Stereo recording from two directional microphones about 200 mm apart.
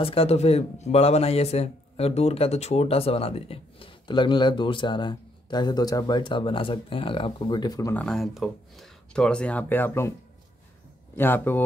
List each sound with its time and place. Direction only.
0.0 s speech: 30° left (ahead or behind)
8.0 s speech: centre (ahead or behind)
11.1 s speech: 10° left (ahead or behind)